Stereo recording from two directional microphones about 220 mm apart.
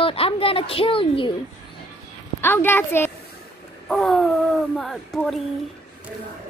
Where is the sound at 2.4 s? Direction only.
10° left (ahead or behind).